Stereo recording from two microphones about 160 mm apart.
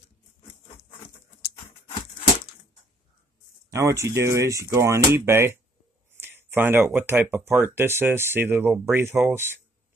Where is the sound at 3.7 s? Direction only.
20° right (ahead or behind).